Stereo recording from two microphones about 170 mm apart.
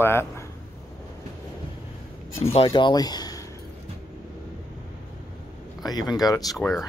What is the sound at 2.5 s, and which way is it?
Speech, 30° left (ahead or behind).